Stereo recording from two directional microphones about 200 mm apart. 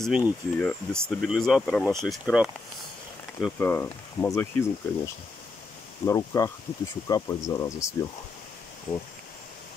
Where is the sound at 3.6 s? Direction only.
10° left (ahead or behind).